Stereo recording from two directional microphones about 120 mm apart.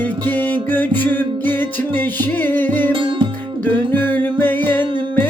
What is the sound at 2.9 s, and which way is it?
Music, 40° right (ahead or behind).